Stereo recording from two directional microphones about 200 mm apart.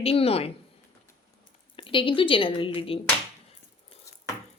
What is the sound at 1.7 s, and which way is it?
A woman's voice, 25° left (ahead or behind).